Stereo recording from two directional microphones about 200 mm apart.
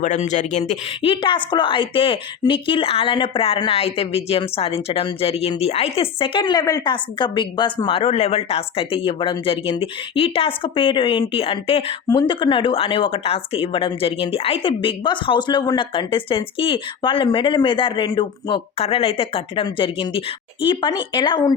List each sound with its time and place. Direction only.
0.0 s speech: 35° left (ahead or behind); by 21.5 s 20° left (ahead or behind)